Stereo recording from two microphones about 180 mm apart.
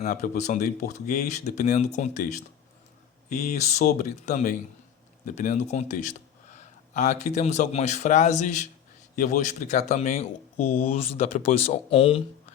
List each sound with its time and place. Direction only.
0.0 s a man's voice: 40° left (ahead or behind)